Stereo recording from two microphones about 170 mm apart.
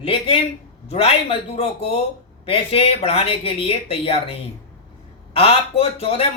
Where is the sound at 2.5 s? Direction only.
35° left (ahead or behind).